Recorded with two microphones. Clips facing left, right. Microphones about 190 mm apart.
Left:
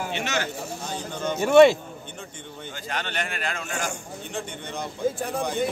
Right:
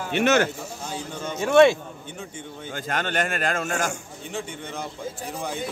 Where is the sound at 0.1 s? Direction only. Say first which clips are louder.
Right 14 dB; 55° right (ahead or behind).